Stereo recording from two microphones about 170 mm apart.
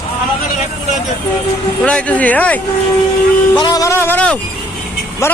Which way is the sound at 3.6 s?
20° left (ahead or behind).